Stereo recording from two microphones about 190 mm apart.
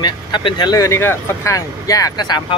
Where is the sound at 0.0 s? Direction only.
25° left (ahead or behind).